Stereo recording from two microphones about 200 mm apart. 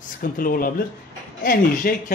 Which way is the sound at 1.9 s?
45° left (ahead or behind).